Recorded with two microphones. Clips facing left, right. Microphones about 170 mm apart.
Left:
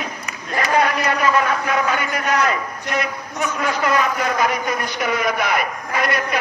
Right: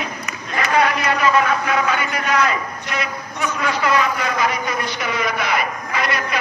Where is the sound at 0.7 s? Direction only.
45° left (ahead or behind).